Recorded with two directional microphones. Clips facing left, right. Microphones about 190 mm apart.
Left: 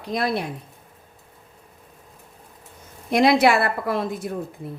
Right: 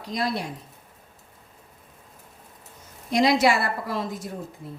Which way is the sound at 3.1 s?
60° left (ahead or behind).